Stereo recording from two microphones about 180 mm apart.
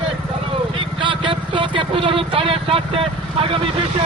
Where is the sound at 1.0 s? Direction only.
25° right (ahead or behind).